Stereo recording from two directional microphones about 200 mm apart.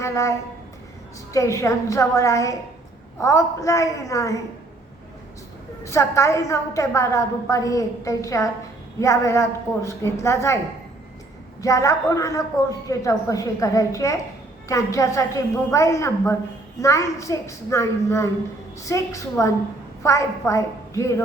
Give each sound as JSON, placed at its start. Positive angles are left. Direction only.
{"t": 0.0, "sound": "a woman's voice", "side_deg": 15}
{"t": 5.8, "sound": "a woman's voice", "side_deg": 15}
{"t": 11.6, "sound": "a woman's voice", "side_deg": 15}